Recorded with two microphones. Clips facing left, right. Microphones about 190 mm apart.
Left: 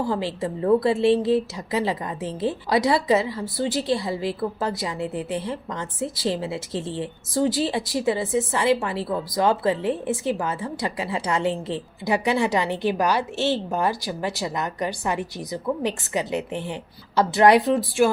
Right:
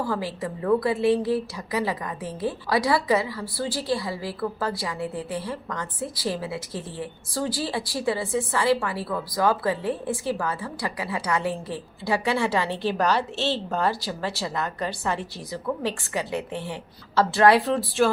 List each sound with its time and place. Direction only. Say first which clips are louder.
0.0 s a woman's voice: left 3 dB; 25° left (ahead or behind)